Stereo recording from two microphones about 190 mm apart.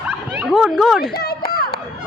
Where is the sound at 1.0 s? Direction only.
55° left (ahead or behind).